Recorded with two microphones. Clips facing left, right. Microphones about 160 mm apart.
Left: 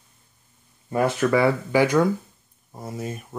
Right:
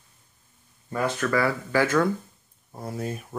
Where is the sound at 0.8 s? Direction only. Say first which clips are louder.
Left 5 dB; 15° left (ahead or behind).